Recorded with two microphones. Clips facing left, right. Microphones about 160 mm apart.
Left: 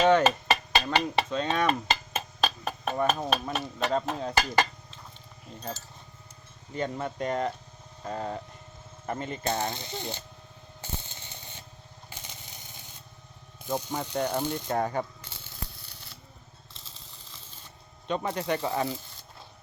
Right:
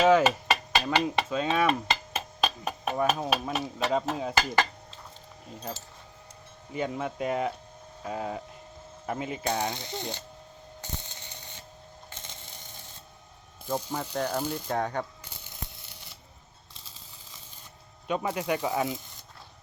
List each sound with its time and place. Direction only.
0.0 s a sound: 5° right (ahead or behind)
6.7 s speech: 5° right (ahead or behind)
11.0 s sanding: 15° right (ahead or behind)
12.1 s coin: 25° right (ahead or behind)
12.5 s a sound: 5° left (ahead or behind)
13.7 s speech: centre (ahead or behind)
15.4 s a sound: 20° right (ahead or behind)
18.1 s speech: 5° right (ahead or behind)
18.9 s sizzle: 15° right (ahead or behind)